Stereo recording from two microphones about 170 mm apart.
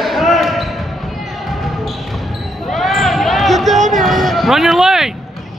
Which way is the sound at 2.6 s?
Centre (ahead or behind).